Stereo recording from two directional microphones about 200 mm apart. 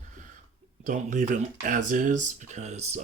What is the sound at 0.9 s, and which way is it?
Speech, 40° right (ahead or behind).